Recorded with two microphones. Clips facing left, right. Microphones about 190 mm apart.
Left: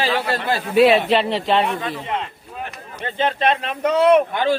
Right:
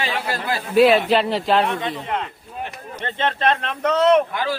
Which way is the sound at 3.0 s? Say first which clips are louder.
Left 2 dB; 5° left (ahead or behind).